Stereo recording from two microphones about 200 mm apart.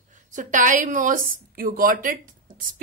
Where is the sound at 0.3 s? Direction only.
40° right (ahead or behind).